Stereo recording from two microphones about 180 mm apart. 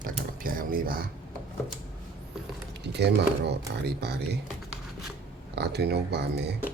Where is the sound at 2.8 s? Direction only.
70° right (ahead or behind).